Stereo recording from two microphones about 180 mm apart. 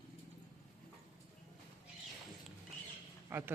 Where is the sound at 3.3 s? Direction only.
15° right (ahead or behind).